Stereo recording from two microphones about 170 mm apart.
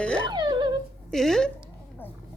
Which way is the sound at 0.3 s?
25° right (ahead or behind).